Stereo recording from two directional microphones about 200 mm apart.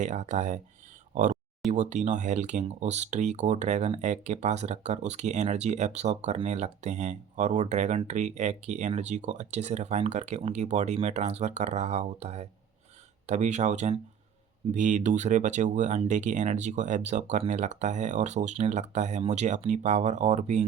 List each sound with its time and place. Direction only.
0.0 s speech: 35° right (ahead or behind)